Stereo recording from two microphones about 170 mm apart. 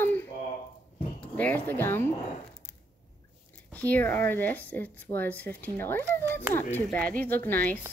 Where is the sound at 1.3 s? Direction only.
10° left (ahead or behind).